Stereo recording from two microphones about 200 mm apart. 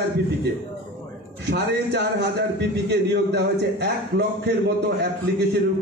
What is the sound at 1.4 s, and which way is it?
A man's voice, 60° right (ahead or behind).